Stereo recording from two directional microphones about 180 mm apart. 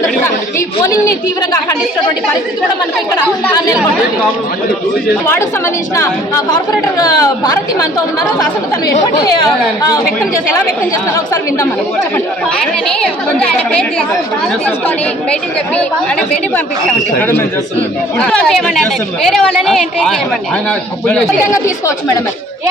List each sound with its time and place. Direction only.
6.0 s speech: 20° left (ahead or behind)
13.0 s a woman's voice: 5° left (ahead or behind)
14.8 s speech: 5° left (ahead or behind)
18.2 s a woman's voice: 5° left (ahead or behind)